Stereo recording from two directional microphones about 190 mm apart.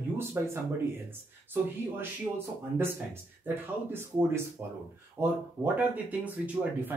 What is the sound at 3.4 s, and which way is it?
Speech, 10° right (ahead or behind).